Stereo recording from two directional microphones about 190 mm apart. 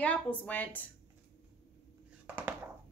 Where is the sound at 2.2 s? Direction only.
10° right (ahead or behind).